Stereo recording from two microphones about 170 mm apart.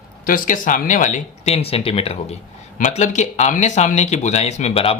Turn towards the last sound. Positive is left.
turn(degrees=35)  # may be behind; listen again after turning